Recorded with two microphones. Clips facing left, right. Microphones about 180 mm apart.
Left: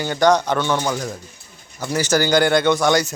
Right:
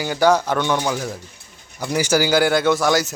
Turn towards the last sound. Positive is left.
turn(degrees=0)  # may be behind; listen again after turning